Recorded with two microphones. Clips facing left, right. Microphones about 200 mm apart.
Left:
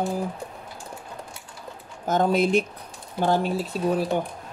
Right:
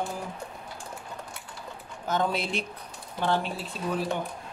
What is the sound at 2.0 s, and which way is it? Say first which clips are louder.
Speech: left 7 dB; 45° left (ahead or behind).